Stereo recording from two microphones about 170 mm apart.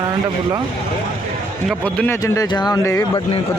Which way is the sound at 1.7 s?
5° left (ahead or behind).